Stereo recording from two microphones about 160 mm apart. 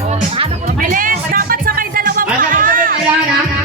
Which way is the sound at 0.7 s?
60° right (ahead or behind).